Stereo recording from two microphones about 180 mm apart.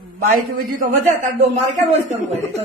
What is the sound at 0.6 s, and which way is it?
Speech, 45° right (ahead or behind).